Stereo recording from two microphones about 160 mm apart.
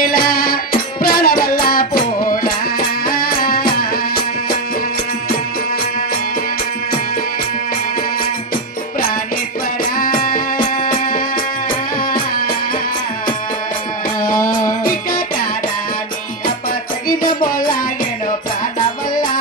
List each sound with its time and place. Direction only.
0.0 s music: 65° left (ahead or behind)
9.9 s music: 60° left (ahead or behind)
14.2 s music: 60° left (ahead or behind)
17.2 s music: 60° left (ahead or behind)
18.8 s music: 55° left (ahead or behind)